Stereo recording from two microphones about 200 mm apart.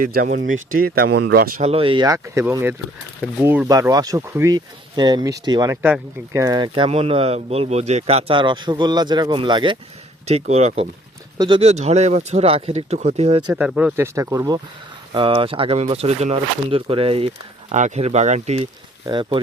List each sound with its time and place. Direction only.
0.0 s speech: 45° right (ahead or behind)
1.6 s speech: 30° right (ahead or behind)
5.7 s speech: 10° right (ahead or behind); by 13.4 s 30° right (ahead or behind)
13.5 s speech: 5° right (ahead or behind); by 19.4 s 25° right (ahead or behind)